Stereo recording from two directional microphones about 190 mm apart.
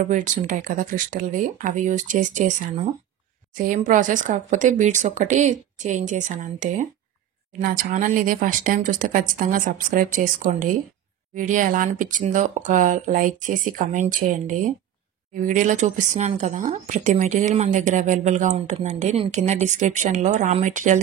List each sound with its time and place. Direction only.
0.0 s a woman's voice: 40° right (ahead or behind)